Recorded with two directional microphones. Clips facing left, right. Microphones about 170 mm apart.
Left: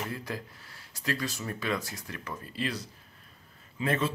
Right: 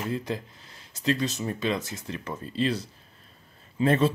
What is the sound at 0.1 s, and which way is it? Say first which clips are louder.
Speech: right 6 dB; 20° right (ahead or behind).